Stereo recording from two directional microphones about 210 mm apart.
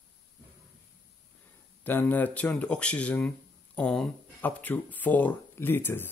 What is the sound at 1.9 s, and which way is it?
Speech, 10° left (ahead or behind).